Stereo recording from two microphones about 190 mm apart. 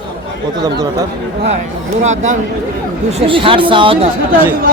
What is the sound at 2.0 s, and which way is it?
Speech, 40° right (ahead or behind).